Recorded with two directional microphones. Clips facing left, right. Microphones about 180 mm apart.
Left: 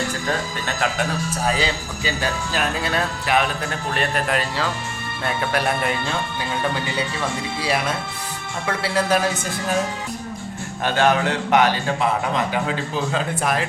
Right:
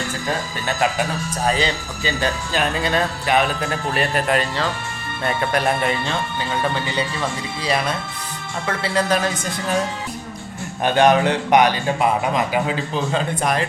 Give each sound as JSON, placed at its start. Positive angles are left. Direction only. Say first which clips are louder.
{"t": 1.5, "sound": "speech", "louder": "right 3 dB", "side_deg": 5}
{"t": 7.6, "sound": "a man's voice", "louder": "right 2 dB", "side_deg": 5}
{"t": 10.8, "sound": "a man's voice", "louder": "right 4 dB", "side_deg": -20}
{"t": 12.9, "sound": "speech", "louder": "right 2 dB", "side_deg": 5}